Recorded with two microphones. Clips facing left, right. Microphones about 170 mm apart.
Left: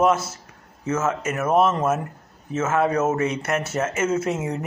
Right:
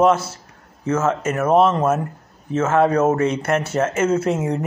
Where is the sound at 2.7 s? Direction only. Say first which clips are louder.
Right 4 dB; 30° right (ahead or behind).